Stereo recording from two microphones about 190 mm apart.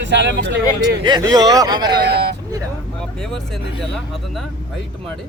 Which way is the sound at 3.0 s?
5° left (ahead or behind).